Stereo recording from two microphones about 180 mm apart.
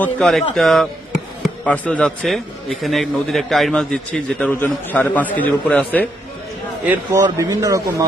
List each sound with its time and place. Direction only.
0.0 s a man's voice: 5° left (ahead or behind)
6.8 s a man's voice: 10° right (ahead or behind)